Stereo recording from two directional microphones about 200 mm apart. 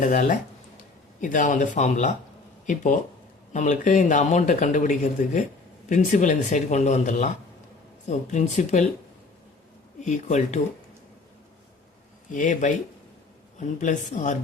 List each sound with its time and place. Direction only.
0.0 s speech: 40° left (ahead or behind)
10.0 s speech: 35° left (ahead or behind)
12.3 s speech: 40° left (ahead or behind)